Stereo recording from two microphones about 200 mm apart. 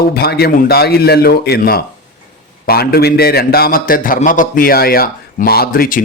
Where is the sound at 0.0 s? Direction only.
50° left (ahead or behind).